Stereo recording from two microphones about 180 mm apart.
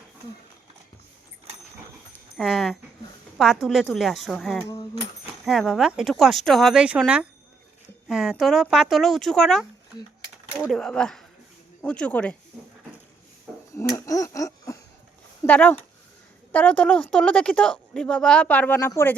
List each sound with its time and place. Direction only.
2.4 s a woman's voice: centre (ahead or behind)
13.7 s a sound: 20° left (ahead or behind)
15.4 s a woman's voice: 10° left (ahead or behind)